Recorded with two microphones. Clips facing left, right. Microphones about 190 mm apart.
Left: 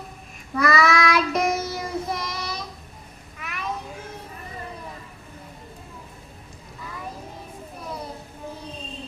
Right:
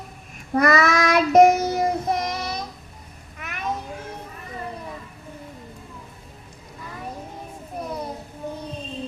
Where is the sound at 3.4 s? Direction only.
45° right (ahead or behind).